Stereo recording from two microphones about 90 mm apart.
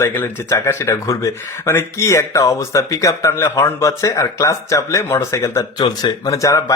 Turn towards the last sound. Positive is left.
turn(degrees=40)  # may be behind; listen again after turning